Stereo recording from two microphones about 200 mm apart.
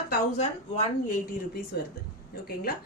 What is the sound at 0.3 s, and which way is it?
Speech, 35° left (ahead or behind).